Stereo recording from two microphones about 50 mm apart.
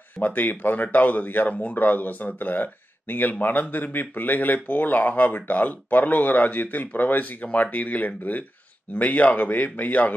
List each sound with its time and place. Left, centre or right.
0.2 s speech: left